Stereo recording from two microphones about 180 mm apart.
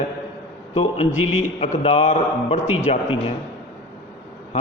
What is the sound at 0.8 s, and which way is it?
A man's voice, 35° left (ahead or behind).